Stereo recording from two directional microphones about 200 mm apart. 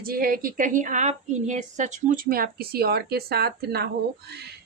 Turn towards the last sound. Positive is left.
turn(degrees=-50)  # may be behind; listen again after turning